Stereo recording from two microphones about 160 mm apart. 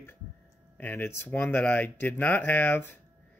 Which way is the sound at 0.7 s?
10° left (ahead or behind).